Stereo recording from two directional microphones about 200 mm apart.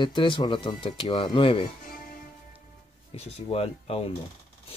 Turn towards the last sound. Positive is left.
turn(degrees=30)  # may be behind; listen again after turning